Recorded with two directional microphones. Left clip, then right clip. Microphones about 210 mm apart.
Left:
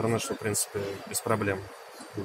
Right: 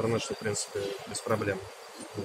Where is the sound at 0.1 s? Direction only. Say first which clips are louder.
Left 1 dB; 50° left (ahead or behind).